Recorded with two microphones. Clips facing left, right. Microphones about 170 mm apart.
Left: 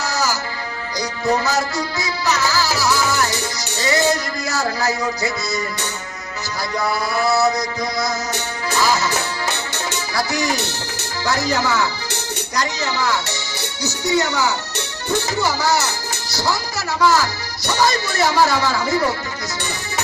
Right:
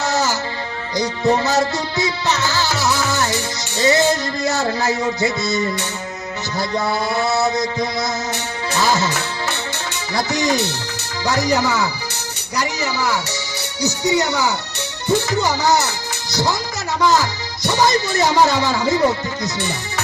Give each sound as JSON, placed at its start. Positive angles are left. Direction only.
{"t": 0.0, "sound": "music", "side_deg": -25}
{"t": 10.2, "sound": "music", "side_deg": -20}
{"t": 11.3, "sound": "speech", "side_deg": -15}
{"t": 15.4, "sound": "music", "side_deg": -20}
{"t": 16.3, "sound": "a woman's voice", "side_deg": -20}
{"t": 17.7, "sound": "music", "side_deg": -20}